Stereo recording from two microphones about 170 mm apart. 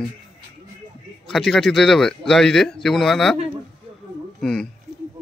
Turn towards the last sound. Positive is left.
turn(degrees=5)  # may be behind; listen again after turning